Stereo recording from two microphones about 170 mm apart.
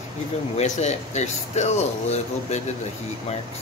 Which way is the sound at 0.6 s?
40° left (ahead or behind).